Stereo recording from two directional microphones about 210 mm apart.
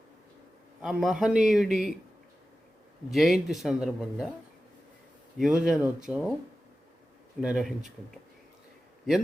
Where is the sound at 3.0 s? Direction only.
Centre (ahead or behind).